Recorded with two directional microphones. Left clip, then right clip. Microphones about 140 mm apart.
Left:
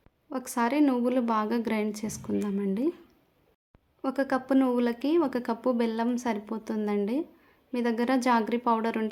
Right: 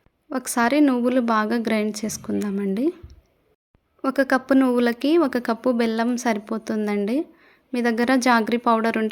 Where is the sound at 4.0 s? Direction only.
30° right (ahead or behind).